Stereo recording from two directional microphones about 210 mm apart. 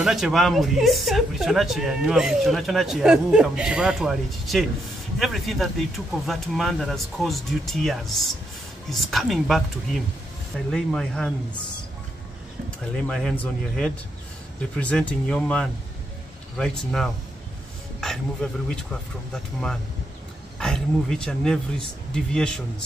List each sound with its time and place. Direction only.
0.0 s speech: centre (ahead or behind)
13.0 s speech: 5° left (ahead or behind)
20.5 s speech: centre (ahead or behind)